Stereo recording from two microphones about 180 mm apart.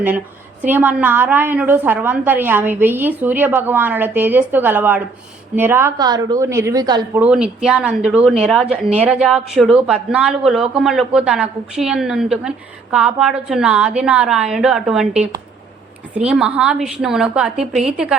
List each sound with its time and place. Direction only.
0.6 s a woman's voice: 10° right (ahead or behind)
7.2 s speech: 5° right (ahead or behind)